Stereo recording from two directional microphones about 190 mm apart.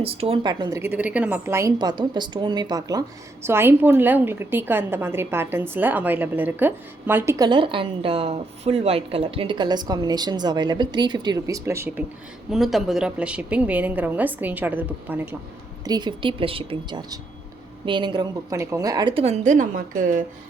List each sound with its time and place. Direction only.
0.0 s a woman's voice: 30° right (ahead or behind); by 12.0 s 15° right (ahead or behind)
12.5 s a woman's voice: centre (ahead or behind)
15.8 s a woman's voice: 20° right (ahead or behind); by 20.2 s 45° right (ahead or behind)